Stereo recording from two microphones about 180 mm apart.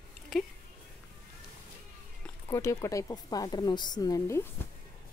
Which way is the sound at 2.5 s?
15° left (ahead or behind).